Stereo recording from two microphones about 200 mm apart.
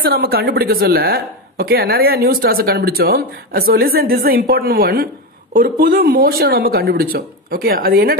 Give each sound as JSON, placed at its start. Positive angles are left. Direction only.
{"t": 0.0, "sound": "speech", "side_deg": -50}